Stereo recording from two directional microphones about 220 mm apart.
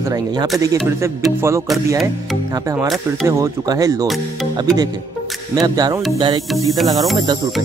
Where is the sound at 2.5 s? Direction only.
15° right (ahead or behind).